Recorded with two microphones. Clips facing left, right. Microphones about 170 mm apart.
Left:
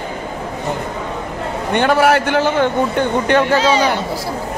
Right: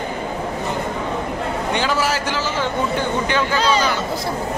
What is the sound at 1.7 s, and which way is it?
A man's voice, 60° left (ahead or behind).